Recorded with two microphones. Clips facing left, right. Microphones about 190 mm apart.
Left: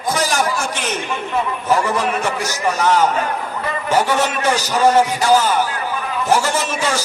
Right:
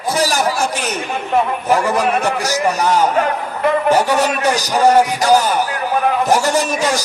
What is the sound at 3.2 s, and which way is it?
Speech, 60° right (ahead or behind).